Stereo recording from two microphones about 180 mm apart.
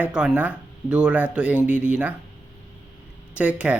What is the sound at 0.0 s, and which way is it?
Speech, 5° right (ahead or behind).